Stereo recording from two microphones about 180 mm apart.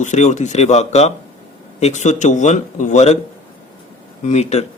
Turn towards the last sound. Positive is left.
turn(degrees=40)  # may be behind; listen again after turning